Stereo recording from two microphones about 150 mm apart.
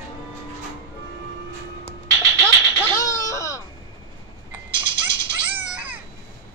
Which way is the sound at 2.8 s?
20° left (ahead or behind).